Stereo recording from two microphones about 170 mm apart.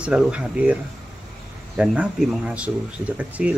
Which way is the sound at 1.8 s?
5° right (ahead or behind).